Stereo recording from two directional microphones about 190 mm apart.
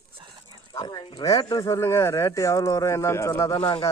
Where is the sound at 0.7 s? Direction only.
25° left (ahead or behind).